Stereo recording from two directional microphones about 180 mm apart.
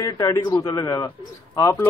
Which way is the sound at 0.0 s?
15° left (ahead or behind).